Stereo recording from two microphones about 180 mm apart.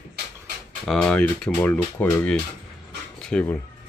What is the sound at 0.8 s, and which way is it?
Speech, 5° left (ahead or behind).